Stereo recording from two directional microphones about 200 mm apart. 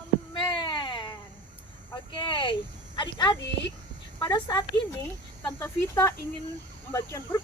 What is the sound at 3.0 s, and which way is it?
A woman's voice, 20° left (ahead or behind).